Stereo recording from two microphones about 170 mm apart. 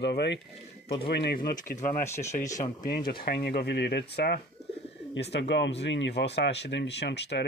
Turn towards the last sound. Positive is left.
turn(degrees=85)